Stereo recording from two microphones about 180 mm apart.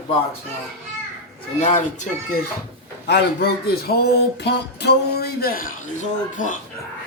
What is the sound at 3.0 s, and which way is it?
Speech, 65° left (ahead or behind).